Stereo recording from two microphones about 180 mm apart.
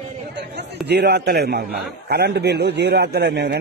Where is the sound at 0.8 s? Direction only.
65° right (ahead or behind).